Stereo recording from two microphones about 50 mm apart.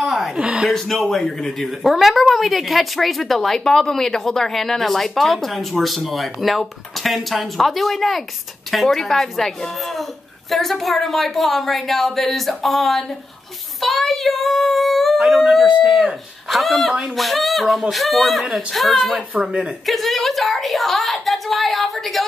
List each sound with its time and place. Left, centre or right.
0.0 s a sound: centre
0.4 s speech: right
0.7 s a woman's voice: centre
10.5 s a woman's voice: centre
13.7 s child singing: centre
16.4 s a woman's voice: centre